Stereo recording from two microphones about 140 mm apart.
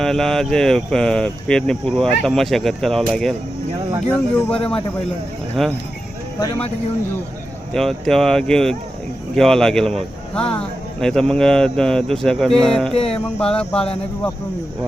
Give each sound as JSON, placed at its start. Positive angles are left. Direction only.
{"t": 0.0, "sound": "a man's voice", "side_deg": 0}
{"t": 4.1, "sound": "a sound", "side_deg": 10}
{"t": 5.6, "sound": "a man's voice", "side_deg": 0}
{"t": 7.7, "sound": "a man's voice", "side_deg": 5}
{"t": 12.9, "sound": "music", "side_deg": 45}
{"t": 13.4, "sound": "a sound", "side_deg": 5}